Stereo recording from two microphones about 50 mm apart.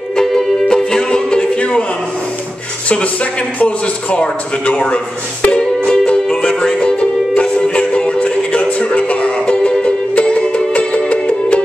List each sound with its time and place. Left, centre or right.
0.1 s music: centre
3.5 s a man's voice: left
5.9 s music: centre